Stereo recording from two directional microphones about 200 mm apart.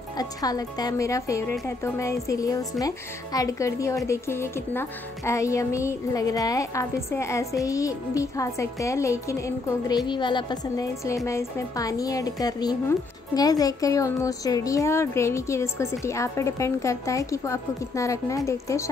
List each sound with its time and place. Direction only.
0.2 s a woman's voice: 20° left (ahead or behind)